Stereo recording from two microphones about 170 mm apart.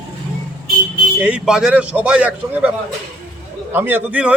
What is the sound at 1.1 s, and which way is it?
Speech, 5° right (ahead or behind).